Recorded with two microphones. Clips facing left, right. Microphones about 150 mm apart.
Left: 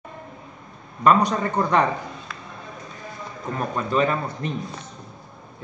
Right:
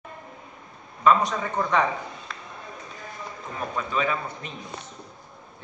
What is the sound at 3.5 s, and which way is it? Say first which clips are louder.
Speech: left 5 dB; 50° left (ahead or behind).